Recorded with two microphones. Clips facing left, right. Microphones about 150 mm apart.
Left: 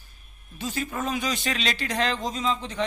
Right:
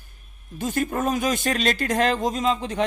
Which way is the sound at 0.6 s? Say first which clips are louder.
Right 6 dB; 50° right (ahead or behind).